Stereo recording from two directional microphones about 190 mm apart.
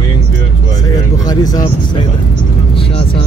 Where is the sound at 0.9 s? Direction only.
20° left (ahead or behind).